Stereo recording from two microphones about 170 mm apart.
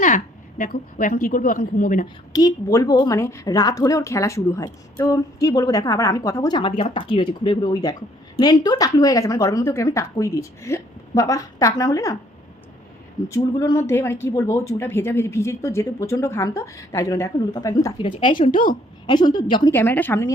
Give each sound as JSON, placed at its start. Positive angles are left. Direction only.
{"t": 0.6, "sound": "a woman's voice", "side_deg": 55}
{"t": 2.3, "sound": "a woman's voice", "side_deg": 20}
{"t": 13.2, "sound": "a woman's voice", "side_deg": 20}
{"t": 19.7, "sound": "speech", "side_deg": 10}